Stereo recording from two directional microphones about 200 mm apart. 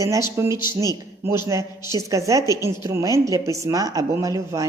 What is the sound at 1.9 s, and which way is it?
Speech, 15° right (ahead or behind).